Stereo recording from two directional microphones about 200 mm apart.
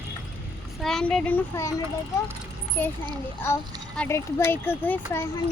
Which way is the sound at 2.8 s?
10° left (ahead or behind).